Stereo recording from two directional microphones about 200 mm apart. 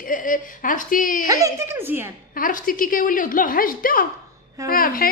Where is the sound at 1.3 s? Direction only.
15° right (ahead or behind).